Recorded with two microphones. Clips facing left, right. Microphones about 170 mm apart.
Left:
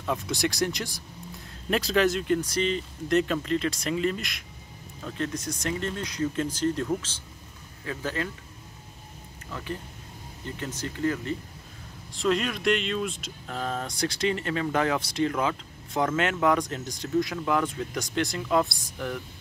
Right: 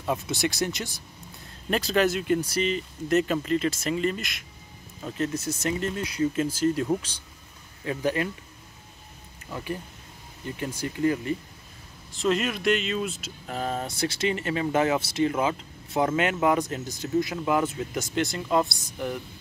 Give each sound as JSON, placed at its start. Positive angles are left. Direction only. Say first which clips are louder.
{"t": 0.0, "sound": "speech", "louder": "right 1 dB", "side_deg": -5}
{"t": 9.5, "sound": "speech", "louder": "right 2 dB", "side_deg": -15}
{"t": 12.1, "sound": "speech", "louder": "right 1 dB", "side_deg": 0}
{"t": 13.7, "sound": "speech", "louder": "right 1 dB", "side_deg": -25}
{"t": 14.0, "sound": "speech", "louder": "even", "side_deg": -5}
{"t": 18.9, "sound": "speech", "louder": "right 2 dB", "side_deg": -10}